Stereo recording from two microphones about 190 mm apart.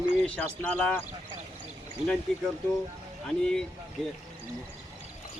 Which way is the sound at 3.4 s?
5° left (ahead or behind).